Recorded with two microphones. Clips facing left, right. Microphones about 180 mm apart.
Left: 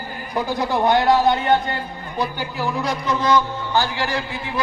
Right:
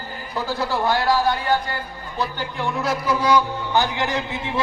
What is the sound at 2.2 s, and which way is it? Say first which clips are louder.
A man's voice: left 2 dB; 5° left (ahead or behind).